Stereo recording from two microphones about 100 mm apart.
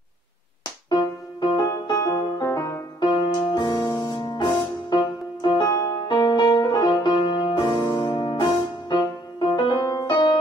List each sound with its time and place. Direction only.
0.8 s music: 45° left (ahead or behind)